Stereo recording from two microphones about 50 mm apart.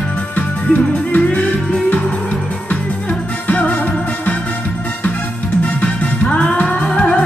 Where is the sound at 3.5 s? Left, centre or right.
Left.